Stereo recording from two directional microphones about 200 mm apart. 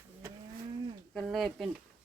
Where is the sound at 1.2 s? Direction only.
Centre (ahead or behind).